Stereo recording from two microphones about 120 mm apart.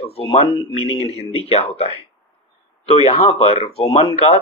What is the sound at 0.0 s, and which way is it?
Speech, 55° left (ahead or behind).